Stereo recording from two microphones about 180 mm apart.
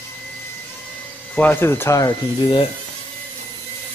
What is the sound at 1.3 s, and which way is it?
Speech, 10° left (ahead or behind).